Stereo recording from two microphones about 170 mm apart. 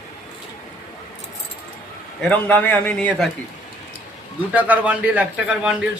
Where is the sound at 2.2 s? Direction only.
10° left (ahead or behind).